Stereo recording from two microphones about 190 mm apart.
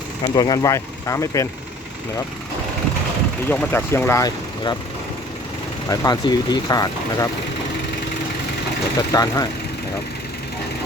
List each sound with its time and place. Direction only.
0.3 s speech: 20° left (ahead or behind)
3.5 s speech: 10° left (ahead or behind)
5.9 s speech: 20° left (ahead or behind)
9.0 s speech: 20° left (ahead or behind)